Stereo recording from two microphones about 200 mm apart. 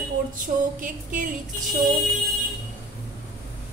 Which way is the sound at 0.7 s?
45° right (ahead or behind).